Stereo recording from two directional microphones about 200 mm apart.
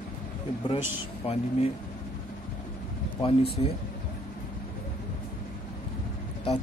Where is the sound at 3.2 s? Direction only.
25° left (ahead or behind).